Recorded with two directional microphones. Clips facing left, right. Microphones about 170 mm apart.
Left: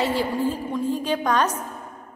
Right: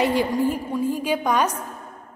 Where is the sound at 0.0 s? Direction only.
15° right (ahead or behind).